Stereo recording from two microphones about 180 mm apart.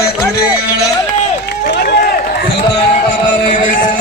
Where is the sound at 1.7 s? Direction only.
60° left (ahead or behind).